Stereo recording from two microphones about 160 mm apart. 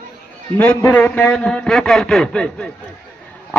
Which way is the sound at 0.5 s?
5° left (ahead or behind).